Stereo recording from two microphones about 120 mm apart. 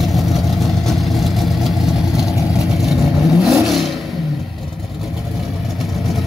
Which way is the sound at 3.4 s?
Centre (ahead or behind).